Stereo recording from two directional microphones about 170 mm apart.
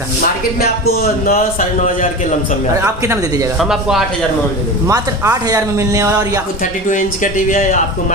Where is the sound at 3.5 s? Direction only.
5° right (ahead or behind).